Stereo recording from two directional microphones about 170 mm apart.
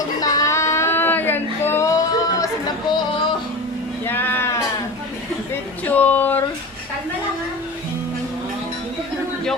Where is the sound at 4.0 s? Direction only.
10° left (ahead or behind).